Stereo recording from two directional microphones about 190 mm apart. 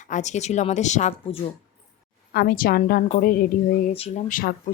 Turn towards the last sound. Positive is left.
turn(degrees=45)  # may be behind; listen again after turning